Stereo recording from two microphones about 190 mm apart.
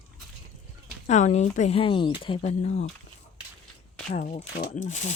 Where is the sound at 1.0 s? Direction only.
35° left (ahead or behind).